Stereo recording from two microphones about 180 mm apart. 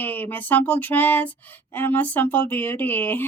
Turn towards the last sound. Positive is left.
turn(degrees=10)  # may be behind; listen again after turning